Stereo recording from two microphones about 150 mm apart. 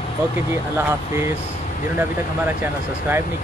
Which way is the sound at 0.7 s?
20° right (ahead or behind).